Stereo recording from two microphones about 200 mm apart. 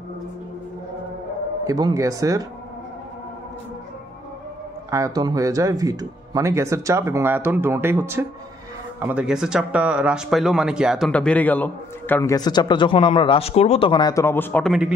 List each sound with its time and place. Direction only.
1.6 s speech: 20° right (ahead or behind)
4.9 s speech: 15° right (ahead or behind)